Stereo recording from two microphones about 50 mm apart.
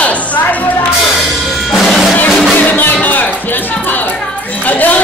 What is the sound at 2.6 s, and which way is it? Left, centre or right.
Music, left.